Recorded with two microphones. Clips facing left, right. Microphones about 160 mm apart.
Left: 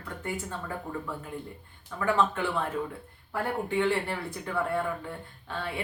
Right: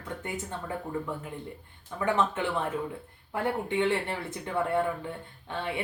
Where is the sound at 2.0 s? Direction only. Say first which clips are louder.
Left 1 dB; 20° right (ahead or behind).